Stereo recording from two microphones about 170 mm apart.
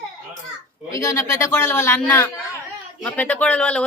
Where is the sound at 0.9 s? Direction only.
20° left (ahead or behind).